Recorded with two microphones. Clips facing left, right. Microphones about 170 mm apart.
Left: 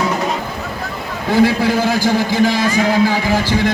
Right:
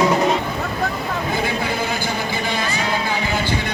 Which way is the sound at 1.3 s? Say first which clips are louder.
Left 13 dB; 90° left.